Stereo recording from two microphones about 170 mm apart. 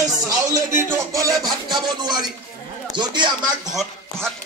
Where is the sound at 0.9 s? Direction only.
20° right (ahead or behind).